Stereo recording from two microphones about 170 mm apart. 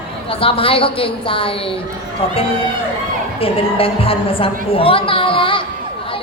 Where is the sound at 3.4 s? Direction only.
35° left (ahead or behind).